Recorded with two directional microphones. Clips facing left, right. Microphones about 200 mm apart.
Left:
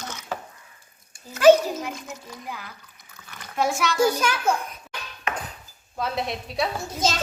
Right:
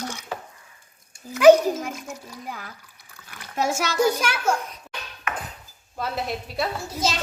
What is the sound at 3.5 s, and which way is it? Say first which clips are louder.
Speech: left 1 dB; 40° right (ahead or behind).